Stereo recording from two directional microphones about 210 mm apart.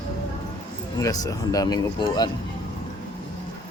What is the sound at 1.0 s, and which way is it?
Speech, 15° left (ahead or behind).